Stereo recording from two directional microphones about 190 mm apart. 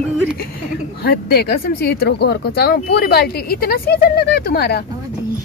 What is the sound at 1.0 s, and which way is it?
Speech, 55° left (ahead or behind).